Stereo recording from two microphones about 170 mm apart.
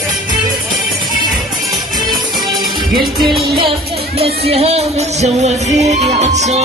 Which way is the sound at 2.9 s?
Centre (ahead or behind).